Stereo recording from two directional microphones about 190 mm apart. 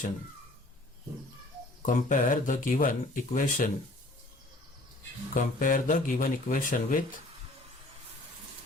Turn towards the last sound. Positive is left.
turn(degrees=45)  # may be behind; listen again after turning